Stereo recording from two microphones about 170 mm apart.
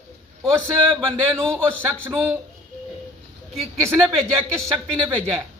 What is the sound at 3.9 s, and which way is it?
Speech, 5° left (ahead or behind).